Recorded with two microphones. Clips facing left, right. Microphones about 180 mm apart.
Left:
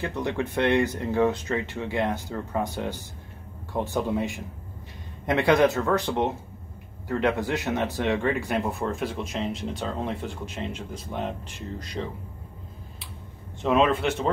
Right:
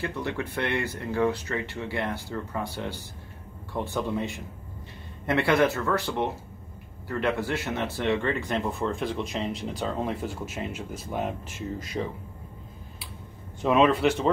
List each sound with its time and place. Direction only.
0.0 s speech: 20° left (ahead or behind); by 12.0 s 5° right (ahead or behind)
13.6 s speech: centre (ahead or behind)